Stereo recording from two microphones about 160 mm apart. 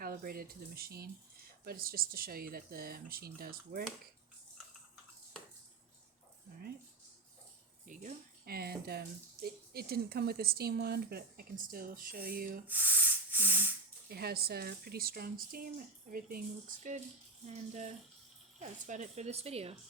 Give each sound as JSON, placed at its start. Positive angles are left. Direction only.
{"t": 0.0, "sound": "speech", "side_deg": -65}
{"t": 7.9, "sound": "speech", "side_deg": -60}
{"t": 12.6, "sound": "a sound", "side_deg": -10}
{"t": 14.1, "sound": "speech", "side_deg": -80}
{"t": 18.6, "sound": "a woman's voice", "side_deg": -45}